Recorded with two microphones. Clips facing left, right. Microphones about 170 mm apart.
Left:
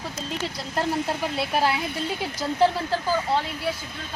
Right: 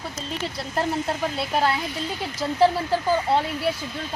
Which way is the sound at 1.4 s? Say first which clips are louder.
Even; 5° left (ahead or behind).